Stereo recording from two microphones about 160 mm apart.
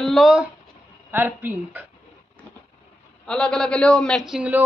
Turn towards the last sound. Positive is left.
turn(degrees=-10)  # may be behind; listen again after turning